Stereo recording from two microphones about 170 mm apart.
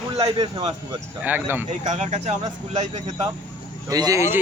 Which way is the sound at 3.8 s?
20° right (ahead or behind).